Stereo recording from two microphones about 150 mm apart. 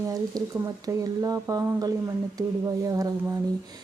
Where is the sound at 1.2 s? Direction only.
25° right (ahead or behind).